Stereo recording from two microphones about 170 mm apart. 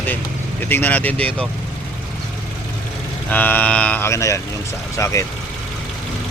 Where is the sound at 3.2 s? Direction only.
10° left (ahead or behind).